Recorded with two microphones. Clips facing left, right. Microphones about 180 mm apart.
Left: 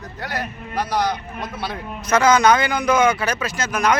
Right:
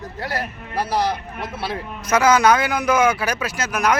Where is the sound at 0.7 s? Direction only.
30° right (ahead or behind).